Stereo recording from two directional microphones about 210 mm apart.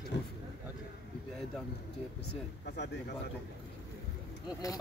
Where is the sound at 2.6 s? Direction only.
55° left (ahead or behind).